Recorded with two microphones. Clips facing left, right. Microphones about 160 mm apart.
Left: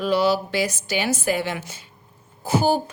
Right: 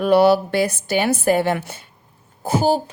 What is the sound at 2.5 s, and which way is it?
Speech, 40° right (ahead or behind).